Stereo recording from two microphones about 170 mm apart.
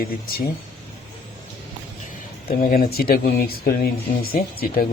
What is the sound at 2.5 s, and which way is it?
Speech, 60° left (ahead or behind).